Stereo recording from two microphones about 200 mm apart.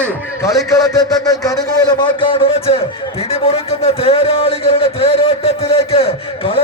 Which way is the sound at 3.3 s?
30° left (ahead or behind).